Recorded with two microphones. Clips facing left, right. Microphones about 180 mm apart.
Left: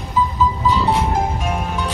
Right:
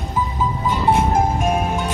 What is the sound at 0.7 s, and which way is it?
Music, 50° right (ahead or behind).